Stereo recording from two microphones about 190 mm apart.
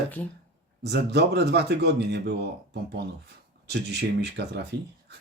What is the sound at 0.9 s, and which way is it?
Speech, 60° right (ahead or behind).